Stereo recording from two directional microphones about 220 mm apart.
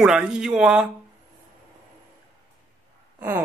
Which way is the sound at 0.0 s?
5° right (ahead or behind).